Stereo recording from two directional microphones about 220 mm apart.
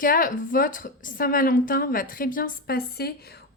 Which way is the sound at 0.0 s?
40° left (ahead or behind).